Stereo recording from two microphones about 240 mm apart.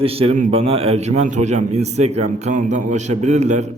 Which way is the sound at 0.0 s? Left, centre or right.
Right.